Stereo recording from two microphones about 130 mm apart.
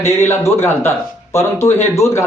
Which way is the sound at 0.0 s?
20° left (ahead or behind).